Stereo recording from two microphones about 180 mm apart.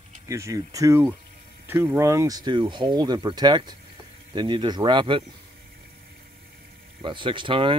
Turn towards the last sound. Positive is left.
turn(degrees=-30)  # may be behind; listen again after turning